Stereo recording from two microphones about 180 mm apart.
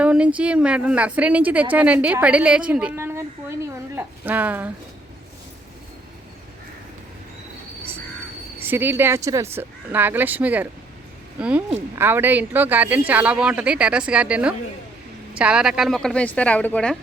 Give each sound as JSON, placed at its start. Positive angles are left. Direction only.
{"t": 0.0, "sound": "a woman's voice", "side_deg": -5}
{"t": 8.5, "sound": "a woman's voice", "side_deg": -10}